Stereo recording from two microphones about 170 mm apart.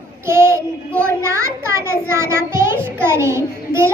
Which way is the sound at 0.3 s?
15° right (ahead or behind).